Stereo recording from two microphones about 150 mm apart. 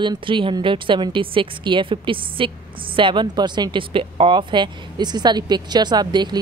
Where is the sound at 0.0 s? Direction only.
35° right (ahead or behind).